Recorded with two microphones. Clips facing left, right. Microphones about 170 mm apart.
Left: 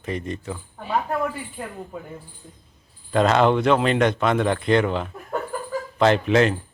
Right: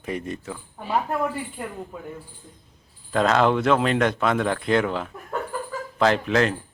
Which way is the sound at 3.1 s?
Centre (ahead or behind).